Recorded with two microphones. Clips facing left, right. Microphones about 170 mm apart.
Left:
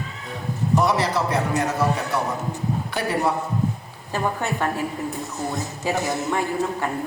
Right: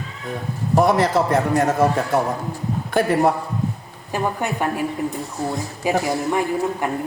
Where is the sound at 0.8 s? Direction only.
50° right (ahead or behind).